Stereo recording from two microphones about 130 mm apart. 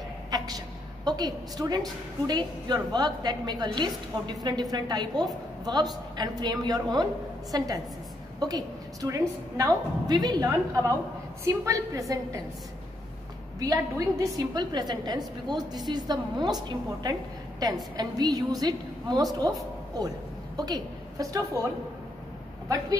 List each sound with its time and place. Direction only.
0.3 s a sound: 30° right (ahead or behind)
1.0 s a woman's voice: 30° right (ahead or behind)
13.6 s a woman's voice: 25° right (ahead or behind)
20.5 s a woman's voice: 30° right (ahead or behind)